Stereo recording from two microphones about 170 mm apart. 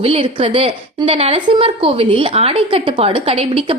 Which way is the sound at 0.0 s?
35° right (ahead or behind).